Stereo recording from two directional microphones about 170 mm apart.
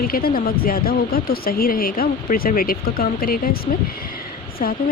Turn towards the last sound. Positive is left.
turn(degrees=55)  # may be behind; listen again after turning